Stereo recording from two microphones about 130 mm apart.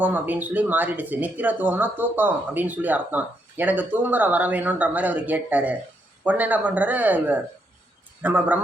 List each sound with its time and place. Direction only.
0.0 s speech: 15° right (ahead or behind)